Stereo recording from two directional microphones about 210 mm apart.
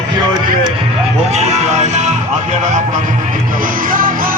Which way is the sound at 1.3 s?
30° right (ahead or behind).